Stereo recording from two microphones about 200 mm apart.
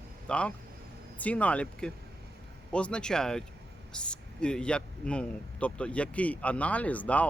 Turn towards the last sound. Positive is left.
turn(degrees=5)  # may be behind; listen again after turning